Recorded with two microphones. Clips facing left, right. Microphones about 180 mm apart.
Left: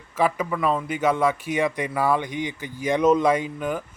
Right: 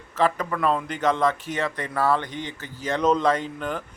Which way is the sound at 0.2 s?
10° left (ahead or behind).